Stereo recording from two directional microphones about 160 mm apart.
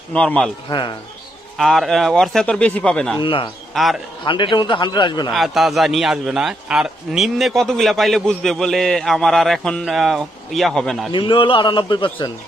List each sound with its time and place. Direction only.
0.1 s a man's voice: 5° left (ahead or behind)
0.7 s a man's voice: 30° left (ahead or behind)
1.6 s a man's voice: centre (ahead or behind)
3.2 s a man's voice: 35° left (ahead or behind)
3.7 s a man's voice: centre (ahead or behind)
4.2 s a man's voice: 30° left (ahead or behind)
5.3 s a man's voice: centre (ahead or behind)
11.1 s a man's voice: 30° left (ahead or behind)